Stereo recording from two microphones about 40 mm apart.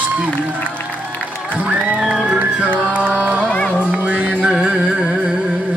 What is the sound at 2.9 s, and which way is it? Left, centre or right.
Music, right.